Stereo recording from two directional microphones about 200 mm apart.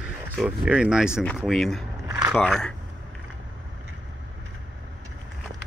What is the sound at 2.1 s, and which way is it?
Biting, 15° right (ahead or behind).